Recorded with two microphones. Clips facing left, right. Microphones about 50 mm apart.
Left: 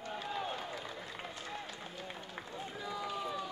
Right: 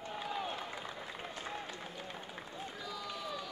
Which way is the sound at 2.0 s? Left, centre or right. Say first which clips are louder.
Left 1 dB; centre.